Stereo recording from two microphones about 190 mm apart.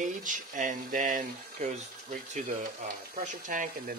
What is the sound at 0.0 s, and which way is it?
Speech, 40° right (ahead or behind).